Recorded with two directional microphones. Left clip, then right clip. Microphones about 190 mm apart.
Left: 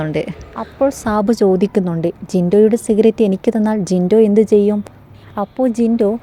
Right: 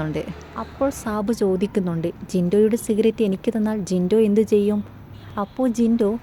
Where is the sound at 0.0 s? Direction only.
25° left (ahead or behind).